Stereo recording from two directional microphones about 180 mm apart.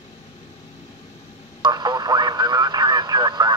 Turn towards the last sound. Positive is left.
turn(degrees=-25)  # may be behind; listen again after turning